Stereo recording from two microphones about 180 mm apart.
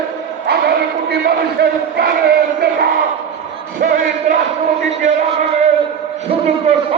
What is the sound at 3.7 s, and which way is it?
Music, 50° right (ahead or behind).